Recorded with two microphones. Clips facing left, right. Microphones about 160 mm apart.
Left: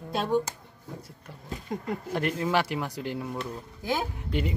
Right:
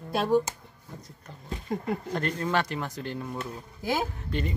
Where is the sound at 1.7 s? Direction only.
5° right (ahead or behind).